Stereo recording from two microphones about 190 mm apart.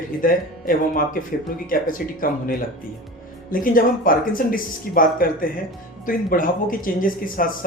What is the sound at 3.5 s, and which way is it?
Speech, 45° left (ahead or behind).